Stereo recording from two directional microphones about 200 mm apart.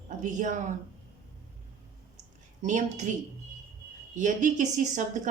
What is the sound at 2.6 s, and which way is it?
Speech, 40° right (ahead or behind).